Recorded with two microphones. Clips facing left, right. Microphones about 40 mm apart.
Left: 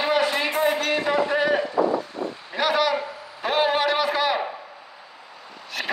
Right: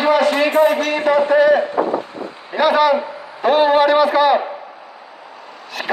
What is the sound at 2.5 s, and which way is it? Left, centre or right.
Speech, centre.